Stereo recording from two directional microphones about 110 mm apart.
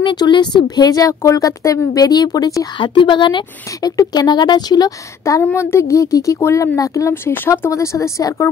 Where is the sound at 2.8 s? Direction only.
50° left (ahead or behind).